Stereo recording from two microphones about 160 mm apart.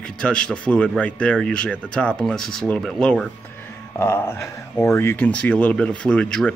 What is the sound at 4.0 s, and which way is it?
Speech, 15° left (ahead or behind).